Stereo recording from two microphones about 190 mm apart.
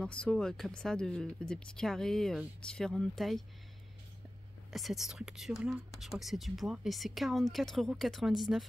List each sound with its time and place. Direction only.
0.0 s speech: 5° left (ahead or behind)
4.7 s speech: centre (ahead or behind)